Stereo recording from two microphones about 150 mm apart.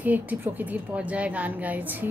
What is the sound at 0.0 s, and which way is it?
A woman's voice, 10° right (ahead or behind).